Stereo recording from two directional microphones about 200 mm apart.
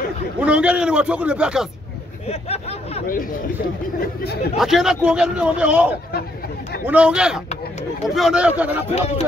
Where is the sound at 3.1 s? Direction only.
45° left (ahead or behind).